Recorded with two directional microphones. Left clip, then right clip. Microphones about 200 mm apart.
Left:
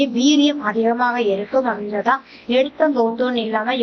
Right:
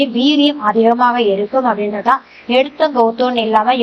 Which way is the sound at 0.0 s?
10° right (ahead or behind).